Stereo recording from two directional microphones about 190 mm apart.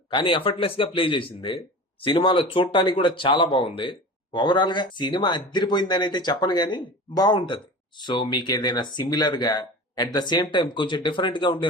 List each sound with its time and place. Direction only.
0.1 s a man's voice: 25° left (ahead or behind)